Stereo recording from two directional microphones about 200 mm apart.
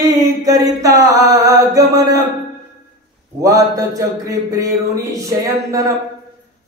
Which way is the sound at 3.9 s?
15° right (ahead or behind).